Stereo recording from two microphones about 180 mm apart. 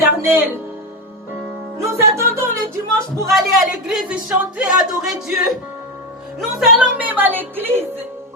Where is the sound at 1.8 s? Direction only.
15° right (ahead or behind).